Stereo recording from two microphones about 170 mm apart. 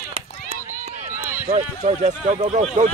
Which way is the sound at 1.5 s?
40° right (ahead or behind).